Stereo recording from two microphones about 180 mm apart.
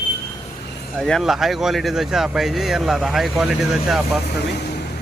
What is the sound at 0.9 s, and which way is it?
Speech, 5° left (ahead or behind).